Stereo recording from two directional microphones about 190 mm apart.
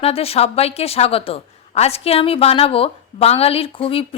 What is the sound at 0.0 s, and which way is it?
A woman's voice, 30° left (ahead or behind).